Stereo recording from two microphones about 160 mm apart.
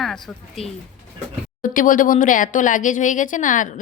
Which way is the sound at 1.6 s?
55° left (ahead or behind).